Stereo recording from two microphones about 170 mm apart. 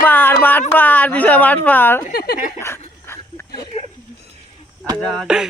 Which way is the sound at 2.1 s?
65° left (ahead or behind).